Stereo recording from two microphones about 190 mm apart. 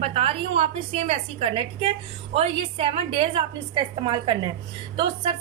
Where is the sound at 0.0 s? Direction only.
30° right (ahead or behind).